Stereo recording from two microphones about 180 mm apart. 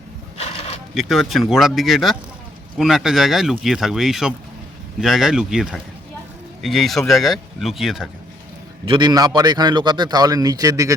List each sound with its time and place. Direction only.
0.3 s a sound: 35° left (ahead or behind)
0.9 s speech: centre (ahead or behind)
8.8 s a man's voice: 25° right (ahead or behind)